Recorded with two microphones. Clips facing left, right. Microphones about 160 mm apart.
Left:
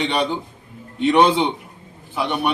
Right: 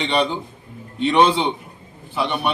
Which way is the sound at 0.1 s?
15° left (ahead or behind).